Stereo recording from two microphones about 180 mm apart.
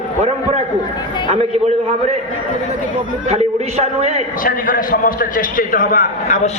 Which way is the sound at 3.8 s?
40° right (ahead or behind).